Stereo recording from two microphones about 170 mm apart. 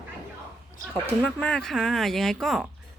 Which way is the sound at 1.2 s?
5° left (ahead or behind).